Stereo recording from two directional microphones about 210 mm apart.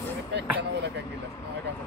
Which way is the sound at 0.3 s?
55° right (ahead or behind).